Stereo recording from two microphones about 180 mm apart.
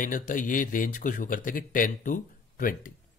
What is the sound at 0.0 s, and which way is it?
Speech, 45° left (ahead or behind).